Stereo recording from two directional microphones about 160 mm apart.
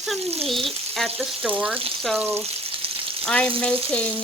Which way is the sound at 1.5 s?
5° right (ahead or behind).